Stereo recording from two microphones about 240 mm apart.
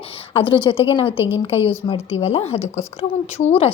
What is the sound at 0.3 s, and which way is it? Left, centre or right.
A woman's voice, left.